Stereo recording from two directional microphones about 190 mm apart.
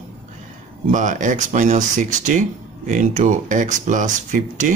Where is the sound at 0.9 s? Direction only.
40° right (ahead or behind).